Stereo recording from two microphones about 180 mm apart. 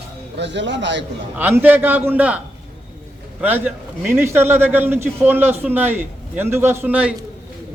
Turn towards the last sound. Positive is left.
turn(degrees=-5)  # may be behind; listen again after turning